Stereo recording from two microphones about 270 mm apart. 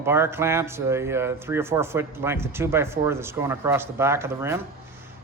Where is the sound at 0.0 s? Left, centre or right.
Centre.